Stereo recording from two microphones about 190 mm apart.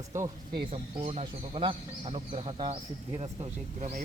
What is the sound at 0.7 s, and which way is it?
Speech, 30° right (ahead or behind).